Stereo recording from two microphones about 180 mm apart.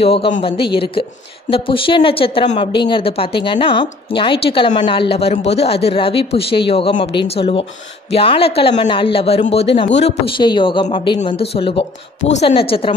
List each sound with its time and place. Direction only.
0.0 s a woman's voice: 30° left (ahead or behind)